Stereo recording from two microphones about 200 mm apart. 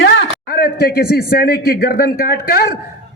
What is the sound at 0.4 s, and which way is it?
A man's voice, 50° left (ahead or behind).